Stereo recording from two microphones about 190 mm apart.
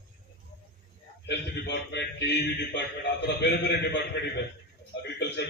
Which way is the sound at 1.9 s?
65° left (ahead or behind).